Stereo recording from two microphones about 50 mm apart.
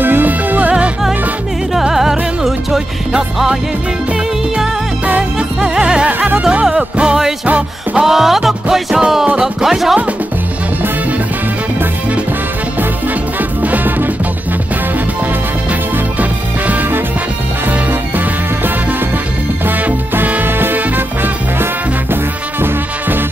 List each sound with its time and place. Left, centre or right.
0.0 s music: right
1.7 s music: centre
5.6 s music: centre
6.0 s music: right
6.4 s music: centre
8.0 s music: centre
9.0 s music: centre
13.4 s music: right
16.2 s music: right